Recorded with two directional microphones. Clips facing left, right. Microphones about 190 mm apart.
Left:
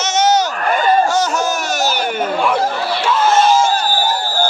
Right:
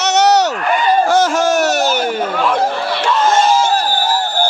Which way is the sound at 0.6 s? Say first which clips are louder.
Even; 45° left (ahead or behind).